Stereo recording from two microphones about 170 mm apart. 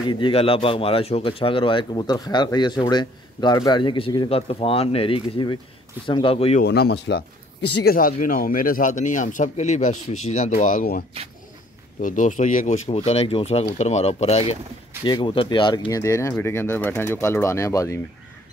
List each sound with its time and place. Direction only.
0.0 s speech: 25° left (ahead or behind)
6.6 s speech: 70° left (ahead or behind); by 14.6 s 40° left (ahead or behind)
15.0 s speech: 30° left (ahead or behind)